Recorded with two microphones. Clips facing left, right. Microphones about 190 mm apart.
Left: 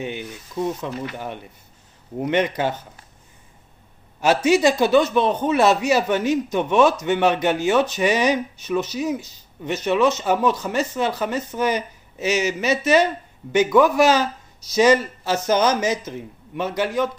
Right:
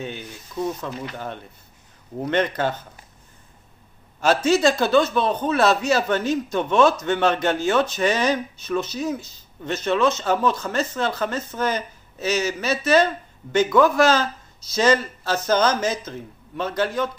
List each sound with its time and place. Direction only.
0.0 s a man's voice: 15° left (ahead or behind)
4.2 s a man's voice: 15° left (ahead or behind)